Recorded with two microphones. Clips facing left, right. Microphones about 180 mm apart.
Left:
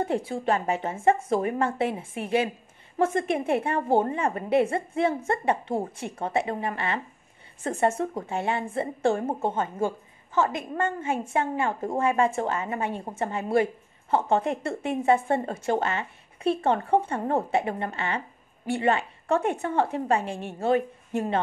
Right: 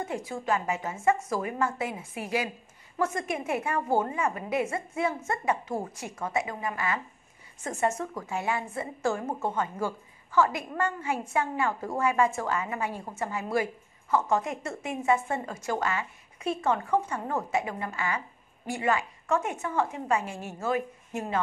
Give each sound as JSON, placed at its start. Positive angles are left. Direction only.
{"t": 0.0, "sound": "a woman's voice", "side_deg": 30}